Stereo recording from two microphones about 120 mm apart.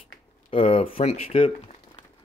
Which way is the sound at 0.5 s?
50° left (ahead or behind).